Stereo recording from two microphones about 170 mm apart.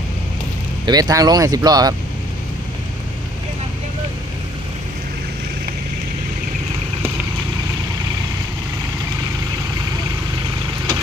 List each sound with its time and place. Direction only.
0.8 s speech: 20° right (ahead or behind)